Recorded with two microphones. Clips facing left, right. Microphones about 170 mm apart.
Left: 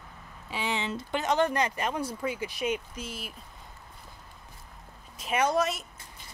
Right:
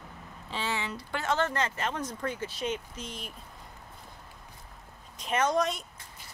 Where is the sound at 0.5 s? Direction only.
15° left (ahead or behind).